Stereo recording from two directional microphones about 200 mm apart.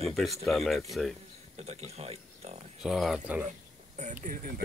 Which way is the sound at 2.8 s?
Centre (ahead or behind).